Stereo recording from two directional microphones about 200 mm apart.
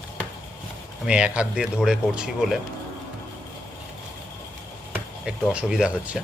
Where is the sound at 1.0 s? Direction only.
5° right (ahead or behind).